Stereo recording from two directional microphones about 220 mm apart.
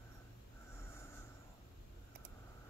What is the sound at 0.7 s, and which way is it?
Snort, 10° left (ahead or behind).